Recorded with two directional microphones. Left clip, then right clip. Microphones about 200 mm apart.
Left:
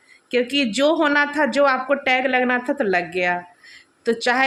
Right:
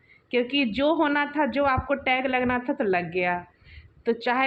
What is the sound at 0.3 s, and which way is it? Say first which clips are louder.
A woman's voice: left 4 dB; 15° left (ahead or behind).